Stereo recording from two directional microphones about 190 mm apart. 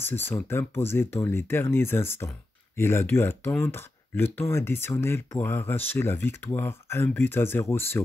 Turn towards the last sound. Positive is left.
turn(degrees=10)  # may be behind; listen again after turning